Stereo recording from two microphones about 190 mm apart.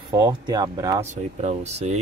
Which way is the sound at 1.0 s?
35° right (ahead or behind).